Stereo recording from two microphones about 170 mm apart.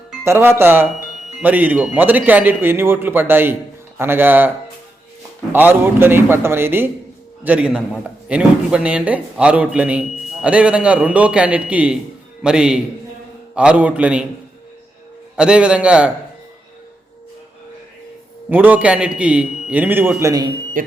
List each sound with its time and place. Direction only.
0.3 s a man's voice: 15° right (ahead or behind)
15.4 s a man's voice: 5° right (ahead or behind)
18.4 s a man's voice: 10° right (ahead or behind)
20.8 s speech: 55° right (ahead or behind)